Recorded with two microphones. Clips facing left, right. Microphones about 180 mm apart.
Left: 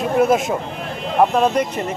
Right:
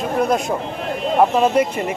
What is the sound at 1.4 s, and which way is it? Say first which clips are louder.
Speech: right 2 dB; 5° right (ahead or behind).